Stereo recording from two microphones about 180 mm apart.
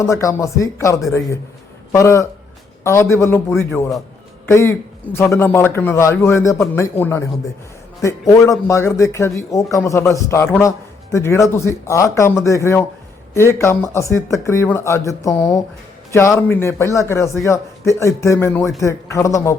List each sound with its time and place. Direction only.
0.0 s a man's voice: 15° left (ahead or behind)